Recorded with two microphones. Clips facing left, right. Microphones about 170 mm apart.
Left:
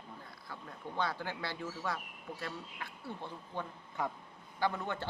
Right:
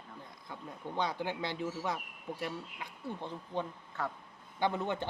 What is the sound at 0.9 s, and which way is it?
A man's voice, 20° right (ahead or behind).